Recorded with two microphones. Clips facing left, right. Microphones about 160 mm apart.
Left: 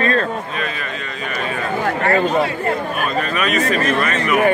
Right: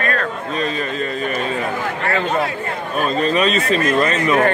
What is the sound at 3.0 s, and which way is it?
Speech, 30° right (ahead or behind).